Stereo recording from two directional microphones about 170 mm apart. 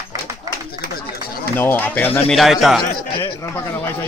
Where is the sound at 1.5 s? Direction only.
10° left (ahead or behind).